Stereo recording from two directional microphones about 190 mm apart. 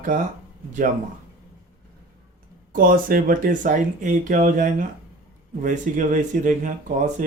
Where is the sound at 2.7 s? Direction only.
50° right (ahead or behind).